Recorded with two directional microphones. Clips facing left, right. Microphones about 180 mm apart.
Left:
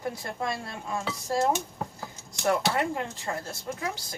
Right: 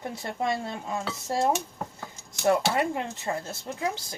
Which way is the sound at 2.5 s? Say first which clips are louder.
Right 2 dB; 20° right (ahead or behind).